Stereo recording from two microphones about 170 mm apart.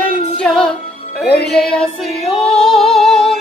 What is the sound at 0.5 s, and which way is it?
Music, 10° left (ahead or behind).